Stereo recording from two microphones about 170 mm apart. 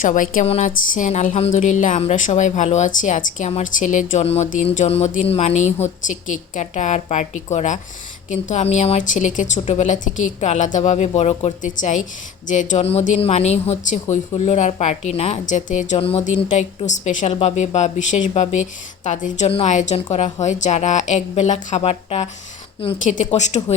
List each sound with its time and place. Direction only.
0.0 s speech: 55° left (ahead or behind)
0.4 s speech: 40° left (ahead or behind)
23.1 s speech: 45° left (ahead or behind)